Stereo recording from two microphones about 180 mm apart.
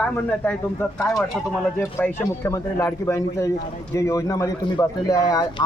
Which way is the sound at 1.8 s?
10° left (ahead or behind).